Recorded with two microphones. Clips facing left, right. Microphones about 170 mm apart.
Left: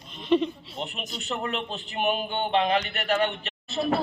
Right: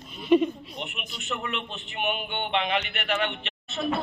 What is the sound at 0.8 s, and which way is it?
A man's voice, 35° left (ahead or behind).